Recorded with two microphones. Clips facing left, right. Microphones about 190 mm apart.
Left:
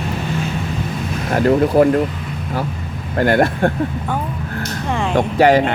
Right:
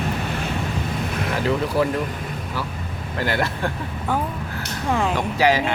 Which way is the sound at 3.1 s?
50° left (ahead or behind).